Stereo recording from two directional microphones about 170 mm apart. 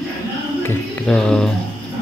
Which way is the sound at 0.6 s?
5° left (ahead or behind).